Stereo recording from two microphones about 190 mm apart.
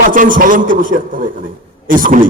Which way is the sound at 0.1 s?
45° right (ahead or behind).